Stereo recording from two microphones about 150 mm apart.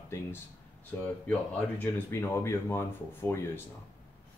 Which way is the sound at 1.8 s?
15° left (ahead or behind).